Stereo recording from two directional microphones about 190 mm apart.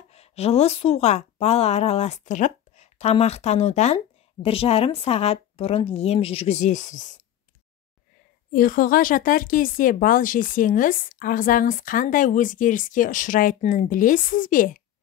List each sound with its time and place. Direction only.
0.1 s a woman's voice: 35° left (ahead or behind)
8.5 s speech: 45° left (ahead or behind)